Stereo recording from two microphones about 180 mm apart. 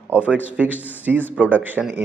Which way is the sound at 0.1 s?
5° right (ahead or behind).